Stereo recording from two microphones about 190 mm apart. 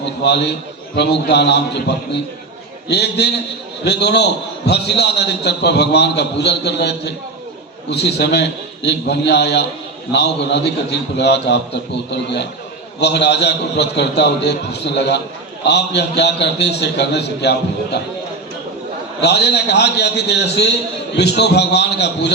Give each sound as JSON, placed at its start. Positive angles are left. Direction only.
{"t": 0.2, "sound": "a man's voice", "side_deg": 60}
{"t": 2.9, "sound": "a man's voice", "side_deg": 60}
{"t": 13.0, "sound": "a man's voice", "side_deg": 60}
{"t": 19.2, "sound": "a man's voice", "side_deg": 60}